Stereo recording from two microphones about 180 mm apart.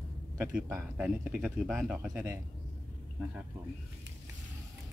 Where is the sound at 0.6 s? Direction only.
10° right (ahead or behind).